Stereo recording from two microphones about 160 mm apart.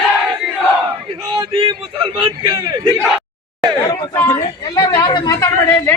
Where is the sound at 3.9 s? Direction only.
25° left (ahead or behind).